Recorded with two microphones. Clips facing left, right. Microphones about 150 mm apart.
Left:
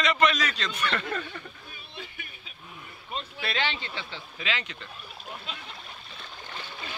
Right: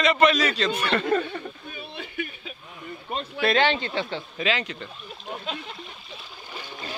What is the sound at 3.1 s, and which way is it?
Speech, 60° right (ahead or behind).